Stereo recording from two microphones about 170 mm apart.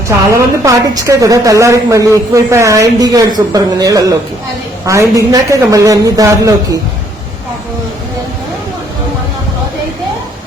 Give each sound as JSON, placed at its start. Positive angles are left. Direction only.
{"t": 0.3, "sound": "a woman's voice", "side_deg": -20}